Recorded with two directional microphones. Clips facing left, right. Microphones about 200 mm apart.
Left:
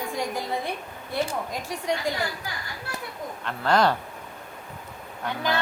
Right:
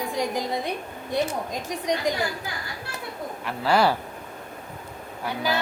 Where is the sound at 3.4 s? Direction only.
10° right (ahead or behind).